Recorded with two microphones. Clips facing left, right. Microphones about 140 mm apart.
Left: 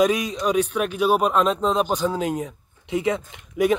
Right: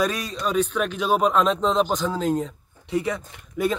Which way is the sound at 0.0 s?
15° left (ahead or behind).